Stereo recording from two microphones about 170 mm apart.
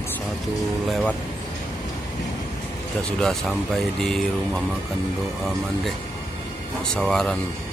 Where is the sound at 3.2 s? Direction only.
Centre (ahead or behind).